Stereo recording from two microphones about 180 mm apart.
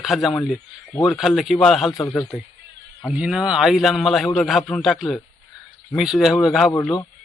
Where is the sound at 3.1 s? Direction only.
5° right (ahead or behind).